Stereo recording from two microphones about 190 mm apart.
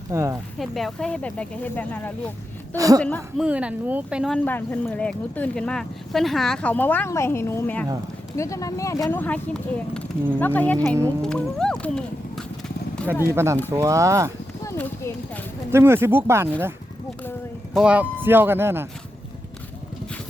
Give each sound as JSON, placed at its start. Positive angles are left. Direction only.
{"t": 0.1, "sound": "speech", "side_deg": -15}
{"t": 0.6, "sound": "speech", "side_deg": 0}
{"t": 2.7, "sound": "speech", "side_deg": -20}
{"t": 3.0, "sound": "speech", "side_deg": 5}
{"t": 3.4, "sound": "speech", "side_deg": -5}
{"t": 4.4, "sound": "speech", "side_deg": 10}
{"t": 11.2, "sound": "horse", "side_deg": 5}
{"t": 13.3, "sound": "speech", "side_deg": -15}
{"t": 14.6, "sound": "clip-clop", "side_deg": 10}
{"t": 15.7, "sound": "speech", "side_deg": -10}
{"t": 17.7, "sound": "speech", "side_deg": -5}